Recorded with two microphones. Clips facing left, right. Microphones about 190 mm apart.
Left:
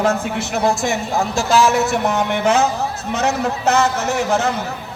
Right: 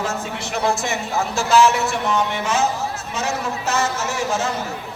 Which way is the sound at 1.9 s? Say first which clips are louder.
Left 3 dB; 45° left (ahead or behind).